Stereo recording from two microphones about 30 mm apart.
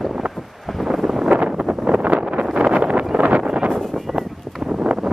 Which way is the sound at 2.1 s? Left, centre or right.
Right.